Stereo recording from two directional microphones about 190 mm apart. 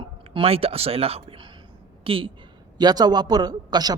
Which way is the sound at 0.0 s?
30° right (ahead or behind).